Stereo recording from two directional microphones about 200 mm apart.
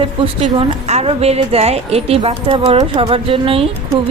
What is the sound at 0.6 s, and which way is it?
Speech, 30° right (ahead or behind).